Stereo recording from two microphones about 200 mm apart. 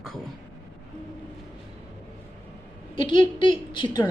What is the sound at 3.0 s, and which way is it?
A woman's voice, 25° left (ahead or behind).